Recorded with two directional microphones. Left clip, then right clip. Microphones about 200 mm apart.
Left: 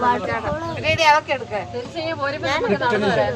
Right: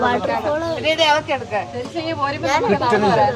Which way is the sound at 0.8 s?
45° left (ahead or behind).